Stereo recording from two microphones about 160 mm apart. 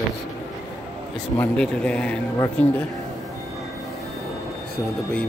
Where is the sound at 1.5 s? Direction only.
5° left (ahead or behind).